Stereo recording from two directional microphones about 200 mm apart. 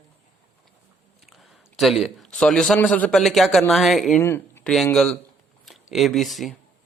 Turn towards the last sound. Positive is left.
turn(degrees=0)  # may be behind; listen again after turning